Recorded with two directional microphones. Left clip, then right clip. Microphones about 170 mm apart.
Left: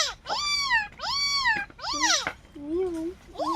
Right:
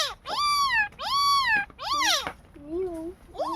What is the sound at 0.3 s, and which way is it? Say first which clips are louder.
Cat: right 3 dB; 45° right (ahead or behind).